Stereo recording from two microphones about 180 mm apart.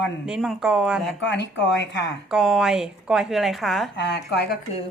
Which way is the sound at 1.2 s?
75° left (ahead or behind).